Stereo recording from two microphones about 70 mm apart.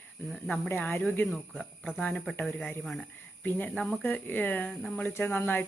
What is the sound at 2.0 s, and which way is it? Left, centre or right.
Speech, centre.